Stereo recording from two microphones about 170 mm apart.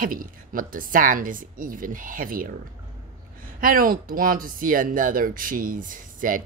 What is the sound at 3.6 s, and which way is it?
Speech, 55° right (ahead or behind).